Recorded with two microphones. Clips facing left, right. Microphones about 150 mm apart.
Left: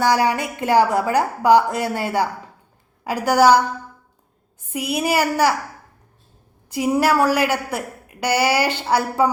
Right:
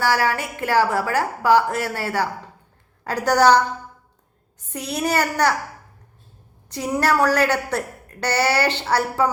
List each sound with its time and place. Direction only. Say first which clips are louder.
0.0 s a woman's voice: left 3 dB; 20° left (ahead or behind)
4.7 s a woman's voice: left 2 dB; 10° left (ahead or behind)
6.7 s a woman's voice: left 3 dB; 10° left (ahead or behind)